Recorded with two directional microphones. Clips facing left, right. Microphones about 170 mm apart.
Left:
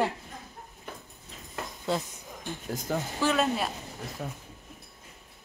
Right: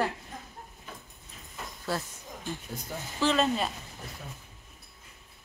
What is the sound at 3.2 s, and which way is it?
Speech, 5° left (ahead or behind).